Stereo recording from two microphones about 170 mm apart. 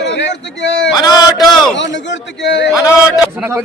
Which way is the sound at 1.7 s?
90° left.